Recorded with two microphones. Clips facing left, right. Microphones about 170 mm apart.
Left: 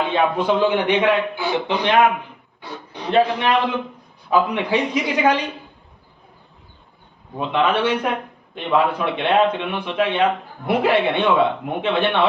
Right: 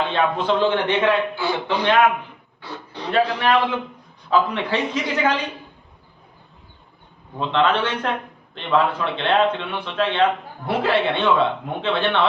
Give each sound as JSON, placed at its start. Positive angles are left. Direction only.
{"t": 0.1, "sound": "a man's voice", "side_deg": 10}
{"t": 7.3, "sound": "a man's voice", "side_deg": 10}